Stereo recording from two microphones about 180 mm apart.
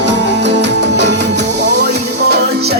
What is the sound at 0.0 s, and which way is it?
Music, 75° right (ahead or behind).